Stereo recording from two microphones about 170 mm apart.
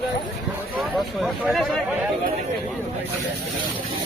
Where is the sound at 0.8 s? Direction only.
Centre (ahead or behind).